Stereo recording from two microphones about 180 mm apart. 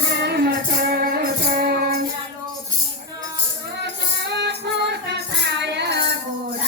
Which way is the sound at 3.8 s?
70° right (ahead or behind).